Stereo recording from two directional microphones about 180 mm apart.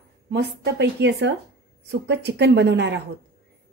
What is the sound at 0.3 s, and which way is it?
A woman's voice, 70° right (ahead or behind).